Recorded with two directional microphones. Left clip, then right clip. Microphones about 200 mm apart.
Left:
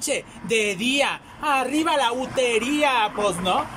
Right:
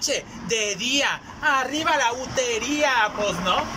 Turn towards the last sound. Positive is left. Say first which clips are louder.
# even
turn(degrees=20)  # may be behind; listen again after turning